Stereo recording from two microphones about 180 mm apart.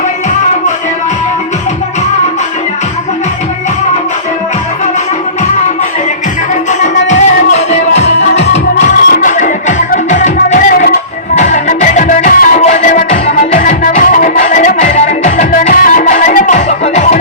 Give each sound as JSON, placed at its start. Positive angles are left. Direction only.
{"t": 6.5, "sound": "music", "side_deg": 40}